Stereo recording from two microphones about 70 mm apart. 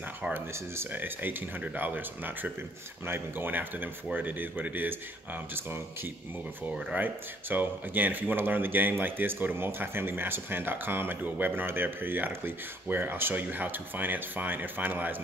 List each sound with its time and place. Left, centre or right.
0.3 s speech: right
6.9 s speech: right